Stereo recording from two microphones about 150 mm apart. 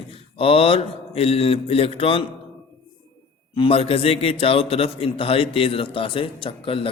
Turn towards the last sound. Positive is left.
turn(degrees=35)  # may be behind; listen again after turning